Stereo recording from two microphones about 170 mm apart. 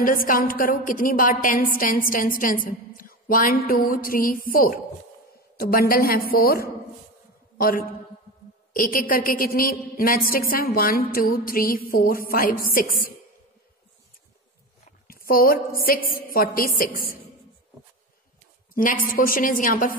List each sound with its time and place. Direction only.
0.0 s a woman's voice: 55° left (ahead or behind)
14.9 s a woman's voice: 60° left (ahead or behind)
19.0 s a woman's voice: 55° left (ahead or behind)